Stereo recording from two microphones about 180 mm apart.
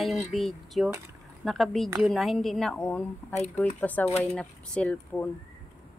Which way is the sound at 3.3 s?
40° left (ahead or behind).